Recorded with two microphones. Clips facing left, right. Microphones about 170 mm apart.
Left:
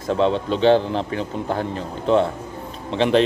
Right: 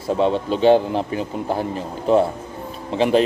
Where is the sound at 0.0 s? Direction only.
5° right (ahead or behind).